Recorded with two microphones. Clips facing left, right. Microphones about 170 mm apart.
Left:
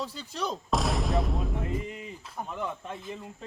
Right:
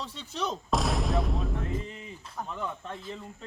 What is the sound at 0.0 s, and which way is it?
Speech, centre (ahead or behind).